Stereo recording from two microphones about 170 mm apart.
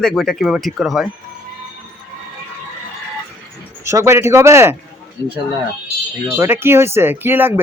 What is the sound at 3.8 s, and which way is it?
Speech, 15° right (ahead or behind).